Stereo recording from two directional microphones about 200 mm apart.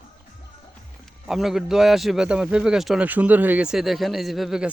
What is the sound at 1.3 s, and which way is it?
A man's voice, centre (ahead or behind).